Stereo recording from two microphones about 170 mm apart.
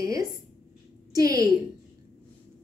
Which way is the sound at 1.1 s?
20° right (ahead or behind).